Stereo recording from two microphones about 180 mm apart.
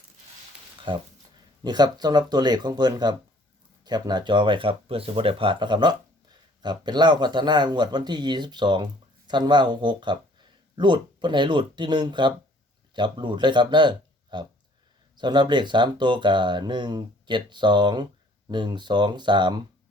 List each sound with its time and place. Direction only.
0.9 s speech: 25° right (ahead or behind)